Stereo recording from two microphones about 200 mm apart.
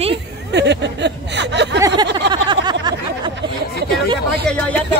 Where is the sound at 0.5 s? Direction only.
60° right (ahead or behind).